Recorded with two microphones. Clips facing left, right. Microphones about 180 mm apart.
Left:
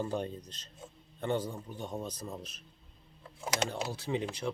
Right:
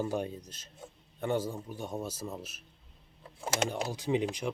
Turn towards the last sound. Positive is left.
turn(degrees=-15)  # may be behind; listen again after turning